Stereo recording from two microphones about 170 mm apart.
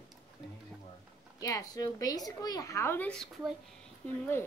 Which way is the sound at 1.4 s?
20° left (ahead or behind).